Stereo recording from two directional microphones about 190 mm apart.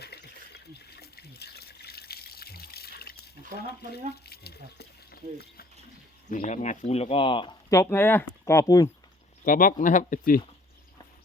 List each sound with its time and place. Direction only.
0.0 s water: 60° left (ahead or behind)
4.3 s a sound: 55° left (ahead or behind)
6.3 s speech: 40° left (ahead or behind); by 8.9 s 20° left (ahead or behind)
9.4 s speech: 45° left (ahead or behind)